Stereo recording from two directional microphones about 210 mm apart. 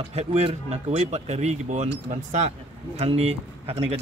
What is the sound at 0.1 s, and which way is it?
A man's voice, 30° right (ahead or behind).